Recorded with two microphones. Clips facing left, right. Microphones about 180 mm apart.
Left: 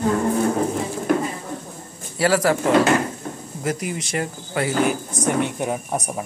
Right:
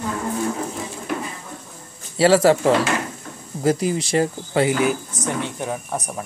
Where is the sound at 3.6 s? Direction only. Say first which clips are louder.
Right 6 dB; 30° right (ahead or behind).